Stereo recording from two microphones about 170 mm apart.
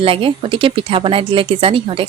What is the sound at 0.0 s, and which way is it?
Speech, 30° right (ahead or behind).